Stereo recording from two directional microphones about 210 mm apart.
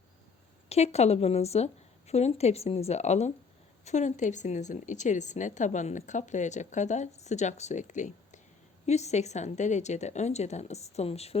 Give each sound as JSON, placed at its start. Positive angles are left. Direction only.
{"t": 0.7, "sound": "speech", "side_deg": 30}